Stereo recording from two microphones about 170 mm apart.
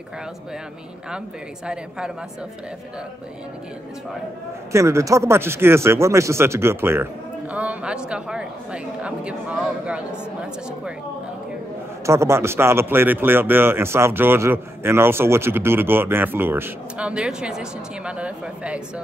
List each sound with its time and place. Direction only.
1.7 s speech: 5° right (ahead or behind)
4.7 s speech: 15° right (ahead or behind)
12.1 s speech: 15° right (ahead or behind)